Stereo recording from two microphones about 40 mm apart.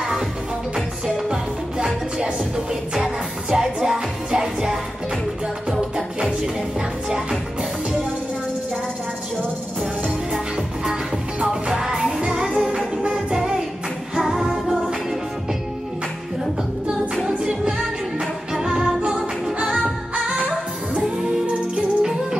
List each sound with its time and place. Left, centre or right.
1.0 s music: centre
11.6 s music: right
17.3 s music: right
19.1 s music: centre
21.7 s music: centre